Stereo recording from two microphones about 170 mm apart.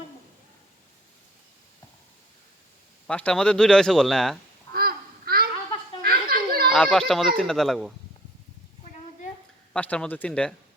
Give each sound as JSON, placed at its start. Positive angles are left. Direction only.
{"t": 3.1, "sound": "speech", "side_deg": 5}
{"t": 4.7, "sound": "a sound", "side_deg": -60}
{"t": 6.0, "sound": "children playing", "side_deg": -60}
{"t": 6.7, "sound": "speech", "side_deg": 5}
{"t": 9.7, "sound": "speech", "side_deg": 5}